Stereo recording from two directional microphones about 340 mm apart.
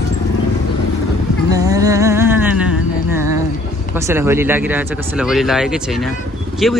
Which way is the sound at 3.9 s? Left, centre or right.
Centre.